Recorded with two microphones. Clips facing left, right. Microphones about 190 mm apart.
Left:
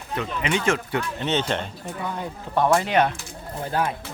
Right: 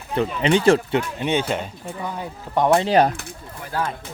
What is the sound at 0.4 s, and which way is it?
Speech, 35° right (ahead or behind).